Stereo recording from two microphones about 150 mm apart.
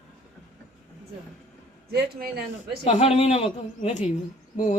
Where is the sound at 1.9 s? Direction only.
90° right.